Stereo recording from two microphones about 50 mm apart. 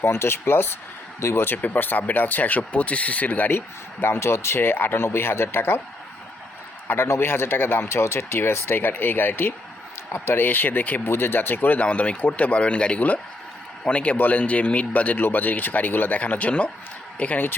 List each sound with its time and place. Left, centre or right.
0.0 s speech: left
4.0 s speech: left
6.8 s speech: left
11.1 s speech: left
16.2 s speech: left